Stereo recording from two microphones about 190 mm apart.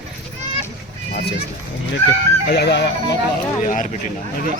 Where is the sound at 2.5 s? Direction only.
60° left (ahead or behind).